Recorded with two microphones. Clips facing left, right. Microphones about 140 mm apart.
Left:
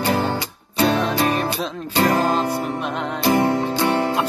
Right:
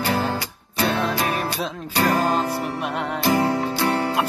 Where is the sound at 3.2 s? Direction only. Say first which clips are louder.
Left 3 dB; 20° left (ahead or behind).